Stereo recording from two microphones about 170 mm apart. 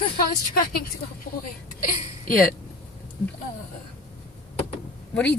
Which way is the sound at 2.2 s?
55° left (ahead or behind).